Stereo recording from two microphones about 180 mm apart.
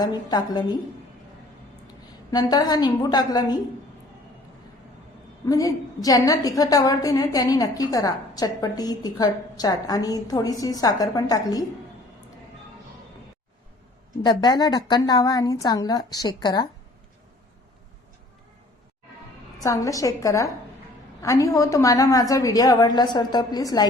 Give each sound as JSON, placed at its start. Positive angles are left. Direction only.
{"t": 0.0, "sound": "a woman's voice", "side_deg": 25}
{"t": 2.3, "sound": "a woman's voice", "side_deg": 20}
{"t": 5.5, "sound": "a woman's voice", "side_deg": 20}
{"t": 14.2, "sound": "a woman's voice", "side_deg": 25}
{"t": 19.5, "sound": "a woman's voice", "side_deg": 20}